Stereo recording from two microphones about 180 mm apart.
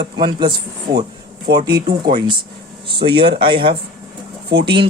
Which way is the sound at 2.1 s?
25° right (ahead or behind).